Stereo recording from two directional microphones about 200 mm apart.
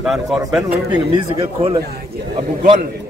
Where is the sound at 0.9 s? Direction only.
25° right (ahead or behind).